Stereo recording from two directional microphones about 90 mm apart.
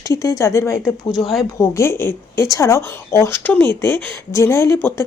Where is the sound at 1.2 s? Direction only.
Centre (ahead or behind).